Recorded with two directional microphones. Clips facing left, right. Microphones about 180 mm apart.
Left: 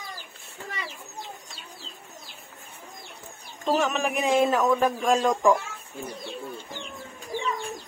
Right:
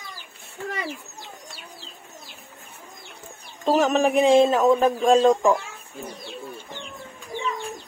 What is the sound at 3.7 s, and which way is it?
A man's voice, 35° right (ahead or behind).